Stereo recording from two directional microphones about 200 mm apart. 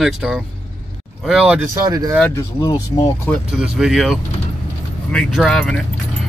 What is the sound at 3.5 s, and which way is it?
Speech, 5° right (ahead or behind).